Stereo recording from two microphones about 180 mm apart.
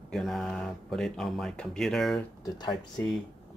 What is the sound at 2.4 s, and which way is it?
Speech, 25° left (ahead or behind).